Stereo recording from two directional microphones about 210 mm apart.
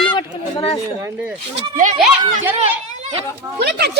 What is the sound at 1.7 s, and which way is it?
Speech, 35° right (ahead or behind).